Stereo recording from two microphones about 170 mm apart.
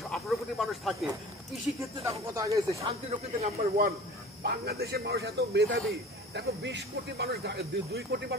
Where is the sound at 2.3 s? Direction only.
20° right (ahead or behind).